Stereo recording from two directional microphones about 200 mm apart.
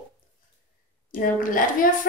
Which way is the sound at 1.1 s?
45° left (ahead or behind).